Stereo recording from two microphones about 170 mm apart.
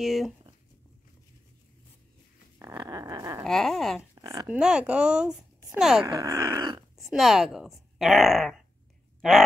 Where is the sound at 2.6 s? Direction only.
20° right (ahead or behind).